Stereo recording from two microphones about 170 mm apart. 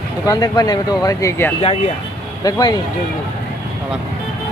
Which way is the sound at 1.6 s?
35° left (ahead or behind).